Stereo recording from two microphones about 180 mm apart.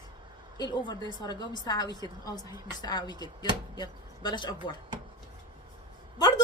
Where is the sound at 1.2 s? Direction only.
25° left (ahead or behind).